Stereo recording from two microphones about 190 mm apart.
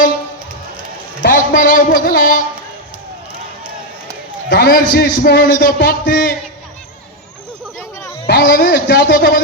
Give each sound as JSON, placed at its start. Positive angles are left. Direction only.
{"t": 1.2, "sound": "a man's voice", "side_deg": 45}
{"t": 4.4, "sound": "a man's voice", "side_deg": 55}
{"t": 8.3, "sound": "speech", "side_deg": 55}
{"t": 9.1, "sound": "a man's voice", "side_deg": 50}